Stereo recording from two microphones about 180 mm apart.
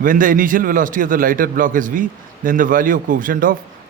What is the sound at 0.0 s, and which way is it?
A man's voice, 50° right (ahead or behind).